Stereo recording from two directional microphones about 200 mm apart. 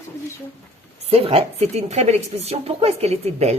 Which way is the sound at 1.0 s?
30° right (ahead or behind).